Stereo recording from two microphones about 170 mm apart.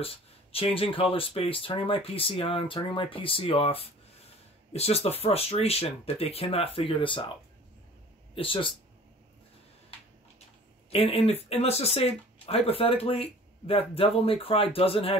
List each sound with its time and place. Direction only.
0.0 s a sound: 35° left (ahead or behind)
0.7 s speech: 30° left (ahead or behind)
8.4 s speech: 30° left (ahead or behind)
10.9 s speech: 35° left (ahead or behind)